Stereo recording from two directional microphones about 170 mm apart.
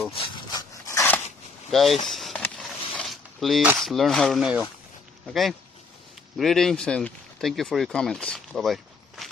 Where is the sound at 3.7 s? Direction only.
Centre (ahead or behind).